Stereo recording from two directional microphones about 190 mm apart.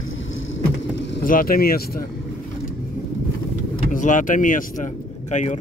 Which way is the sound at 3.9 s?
40° left (ahead or behind).